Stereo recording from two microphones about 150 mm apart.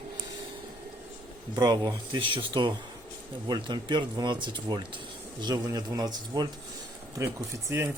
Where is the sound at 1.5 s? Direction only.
30° right (ahead or behind).